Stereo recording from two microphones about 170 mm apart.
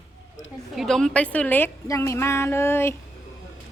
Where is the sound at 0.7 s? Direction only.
Centre (ahead or behind).